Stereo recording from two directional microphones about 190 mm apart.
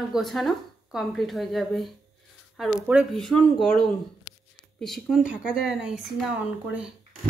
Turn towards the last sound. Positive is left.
turn(degrees=-5)  # may be behind; listen again after turning